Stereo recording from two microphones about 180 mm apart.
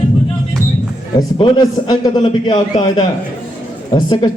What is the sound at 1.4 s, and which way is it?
Speech, 25° left (ahead or behind).